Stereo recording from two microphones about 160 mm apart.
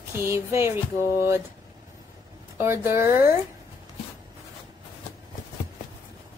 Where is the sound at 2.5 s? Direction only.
15° right (ahead or behind).